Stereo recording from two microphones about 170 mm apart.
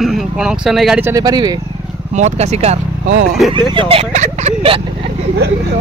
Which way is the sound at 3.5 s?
30° right (ahead or behind).